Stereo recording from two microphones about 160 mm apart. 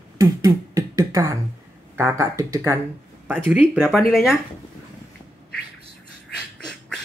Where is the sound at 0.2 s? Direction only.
20° right (ahead or behind).